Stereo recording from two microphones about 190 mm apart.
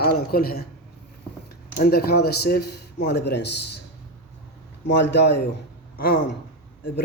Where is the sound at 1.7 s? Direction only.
55° left (ahead or behind).